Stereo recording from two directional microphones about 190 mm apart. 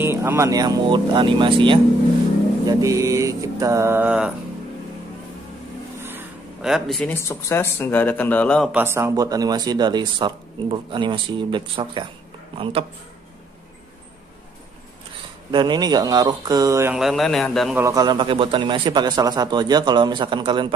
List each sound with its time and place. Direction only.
0.0 s speech: 10° right (ahead or behind)
2.6 s mantra: 20° right (ahead or behind)
5.9 s a sound: 10° right (ahead or behind)
7.2 s speech: 15° left (ahead or behind)
8.7 s speech: 10° right (ahead or behind); by 12.8 s 30° right (ahead or behind)
15.5 s speech: 20° right (ahead or behind)
16.9 s a man's voice: centre (ahead or behind)
17.7 s speech: 15° right (ahead or behind)